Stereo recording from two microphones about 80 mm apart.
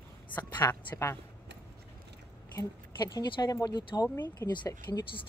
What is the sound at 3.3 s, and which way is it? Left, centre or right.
Speech, left.